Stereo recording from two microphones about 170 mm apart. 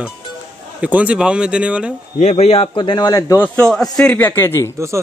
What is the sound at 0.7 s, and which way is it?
Speech, 10° right (ahead or behind).